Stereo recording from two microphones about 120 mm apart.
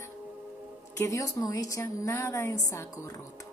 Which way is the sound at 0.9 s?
25° left (ahead or behind).